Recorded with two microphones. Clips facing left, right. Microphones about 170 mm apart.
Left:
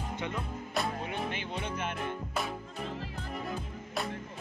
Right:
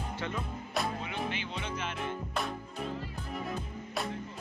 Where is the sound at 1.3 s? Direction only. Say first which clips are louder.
Left 1 dB; 50° left (ahead or behind).